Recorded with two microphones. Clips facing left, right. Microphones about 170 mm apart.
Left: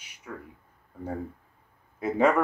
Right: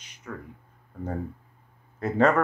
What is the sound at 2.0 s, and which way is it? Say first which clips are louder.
Speech: right 1 dB; 10° left (ahead or behind).